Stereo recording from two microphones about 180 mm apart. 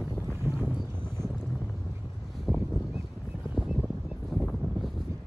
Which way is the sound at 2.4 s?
Centre (ahead or behind).